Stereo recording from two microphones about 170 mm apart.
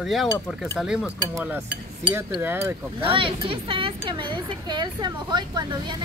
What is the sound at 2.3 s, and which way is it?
Speech, 10° right (ahead or behind).